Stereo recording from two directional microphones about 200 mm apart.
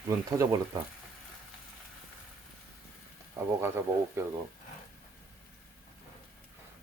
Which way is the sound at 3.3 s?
10° right (ahead or behind).